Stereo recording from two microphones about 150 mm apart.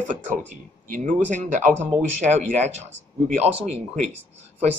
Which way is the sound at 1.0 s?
55° right (ahead or behind).